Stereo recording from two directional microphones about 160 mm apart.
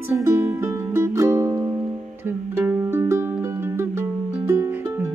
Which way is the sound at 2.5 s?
15° right (ahead or behind).